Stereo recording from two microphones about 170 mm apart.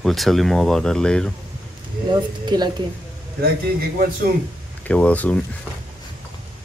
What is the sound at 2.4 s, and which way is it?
Speech, 25° right (ahead or behind).